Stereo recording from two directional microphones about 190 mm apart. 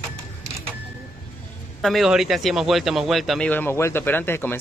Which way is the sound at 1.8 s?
Centre (ahead or behind).